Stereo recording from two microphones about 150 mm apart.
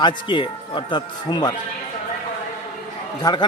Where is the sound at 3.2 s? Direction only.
30° left (ahead or behind).